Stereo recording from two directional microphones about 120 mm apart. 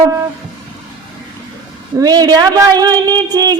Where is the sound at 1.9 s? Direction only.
30° right (ahead or behind).